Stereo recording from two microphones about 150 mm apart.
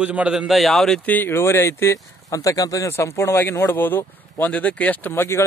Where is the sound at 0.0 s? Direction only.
10° right (ahead or behind).